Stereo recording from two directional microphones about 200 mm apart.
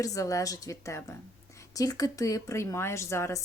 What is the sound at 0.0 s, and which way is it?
A woman's voice, 15° left (ahead or behind).